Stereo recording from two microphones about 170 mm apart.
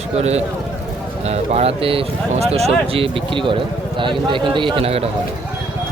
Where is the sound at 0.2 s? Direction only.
40° right (ahead or behind).